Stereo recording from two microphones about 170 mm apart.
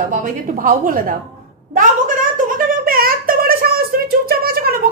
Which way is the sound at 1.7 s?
50° right (ahead or behind).